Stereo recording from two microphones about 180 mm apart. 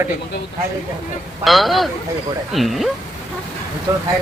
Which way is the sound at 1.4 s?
Centre (ahead or behind).